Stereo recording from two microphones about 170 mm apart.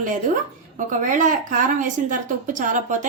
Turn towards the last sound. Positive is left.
turn(degrees=-50)  # may be behind; listen again after turning